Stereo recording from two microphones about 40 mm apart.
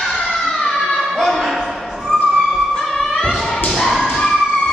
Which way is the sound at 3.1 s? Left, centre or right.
Centre.